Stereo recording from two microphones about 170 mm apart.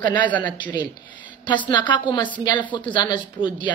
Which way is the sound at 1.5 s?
25° left (ahead or behind).